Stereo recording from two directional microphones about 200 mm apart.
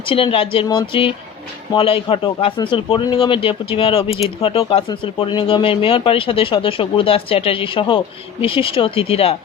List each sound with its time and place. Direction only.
0.0 s a man's voice: 25° left (ahead or behind)